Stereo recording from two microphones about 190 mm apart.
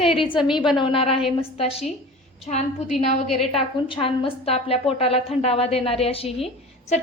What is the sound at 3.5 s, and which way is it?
A woman's voice, 30° left (ahead or behind).